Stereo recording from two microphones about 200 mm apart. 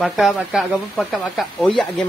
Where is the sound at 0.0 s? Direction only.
Centre (ahead or behind).